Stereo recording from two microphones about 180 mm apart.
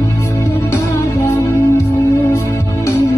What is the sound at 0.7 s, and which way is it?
Music, 15° left (ahead or behind).